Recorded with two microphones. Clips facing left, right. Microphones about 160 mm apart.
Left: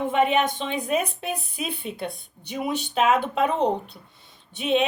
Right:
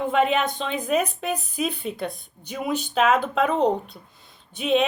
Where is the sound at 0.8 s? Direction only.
40° right (ahead or behind).